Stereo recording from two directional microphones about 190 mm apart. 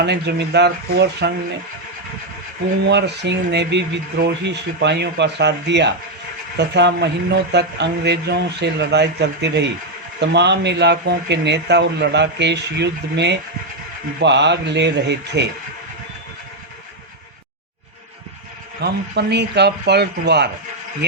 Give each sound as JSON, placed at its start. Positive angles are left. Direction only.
{"t": 0.0, "sound": "speech", "side_deg": -60}
{"t": 2.9, "sound": "speech", "side_deg": -65}
{"t": 18.8, "sound": "speech", "side_deg": -65}